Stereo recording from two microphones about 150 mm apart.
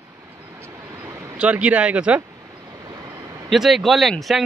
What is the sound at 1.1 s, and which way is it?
Speech, 10° right (ahead or behind).